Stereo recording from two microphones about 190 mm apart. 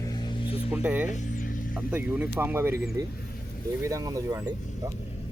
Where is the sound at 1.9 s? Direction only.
10° right (ahead or behind).